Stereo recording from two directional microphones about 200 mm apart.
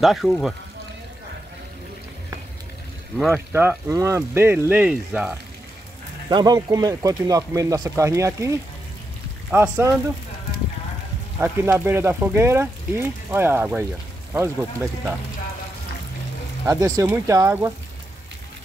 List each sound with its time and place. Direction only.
0.0 s speech: centre (ahead or behind)
3.5 s speech: 10° right (ahead or behind)
6.2 s speech: 20° right (ahead or behind)
11.4 s speech: 10° right (ahead or behind)
16.6 s speech: 20° right (ahead or behind)